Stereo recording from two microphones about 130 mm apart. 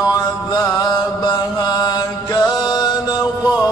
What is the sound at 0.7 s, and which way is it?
Mantra, 30° left (ahead or behind).